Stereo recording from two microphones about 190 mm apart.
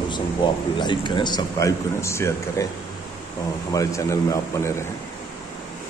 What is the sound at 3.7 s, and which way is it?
A man's voice, 15° left (ahead or behind).